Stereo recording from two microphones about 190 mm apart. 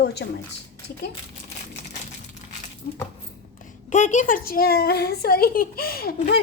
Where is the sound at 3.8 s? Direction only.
40° left (ahead or behind).